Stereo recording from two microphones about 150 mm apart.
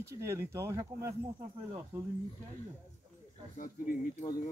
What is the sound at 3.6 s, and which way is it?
Speech, 60° left (ahead or behind).